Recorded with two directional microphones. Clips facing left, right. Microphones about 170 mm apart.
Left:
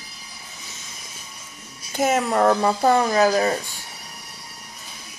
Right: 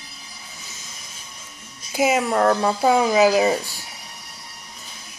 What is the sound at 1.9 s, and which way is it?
Speech, 5° right (ahead or behind).